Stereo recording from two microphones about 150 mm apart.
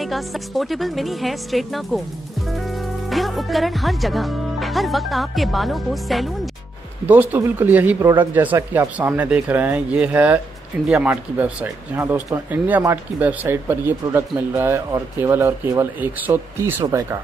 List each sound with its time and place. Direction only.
0.0 s speech: centre (ahead or behind)
7.1 s speech: 10° right (ahead or behind)